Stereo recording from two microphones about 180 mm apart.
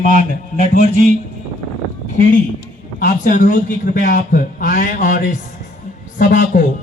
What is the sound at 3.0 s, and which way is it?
Speech, 50° left (ahead or behind).